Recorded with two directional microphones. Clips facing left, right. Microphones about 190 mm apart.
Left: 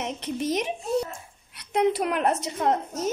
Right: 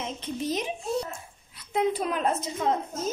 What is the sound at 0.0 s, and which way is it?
A woman's voice, 75° left (ahead or behind).